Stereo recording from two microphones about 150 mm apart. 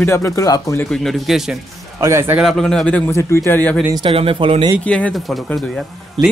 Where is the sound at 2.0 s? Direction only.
20° right (ahead or behind).